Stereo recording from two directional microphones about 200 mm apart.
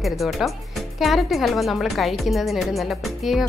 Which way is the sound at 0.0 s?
Centre (ahead or behind).